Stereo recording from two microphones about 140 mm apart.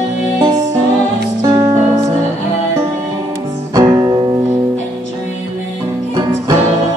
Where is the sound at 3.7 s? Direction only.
25° right (ahead or behind).